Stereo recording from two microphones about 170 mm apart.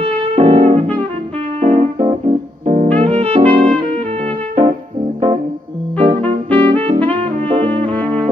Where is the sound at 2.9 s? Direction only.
35° right (ahead or behind).